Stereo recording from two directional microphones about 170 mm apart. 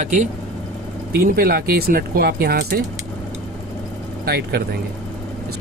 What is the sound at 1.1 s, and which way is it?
Speech, 65° right (ahead or behind).